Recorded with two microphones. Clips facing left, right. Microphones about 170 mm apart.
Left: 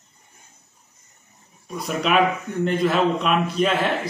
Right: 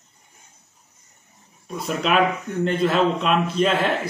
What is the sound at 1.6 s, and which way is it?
A man's voice, centre (ahead or behind).